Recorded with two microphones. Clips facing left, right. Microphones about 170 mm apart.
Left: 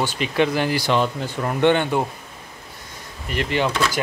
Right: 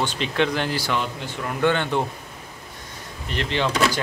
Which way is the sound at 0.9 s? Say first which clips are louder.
Left 6 dB; 40° left (ahead or behind).